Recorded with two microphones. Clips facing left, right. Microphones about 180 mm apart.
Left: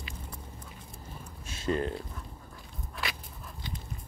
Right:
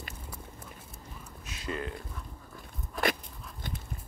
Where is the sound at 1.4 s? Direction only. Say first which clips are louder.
Left 6 dB; 30° left (ahead or behind).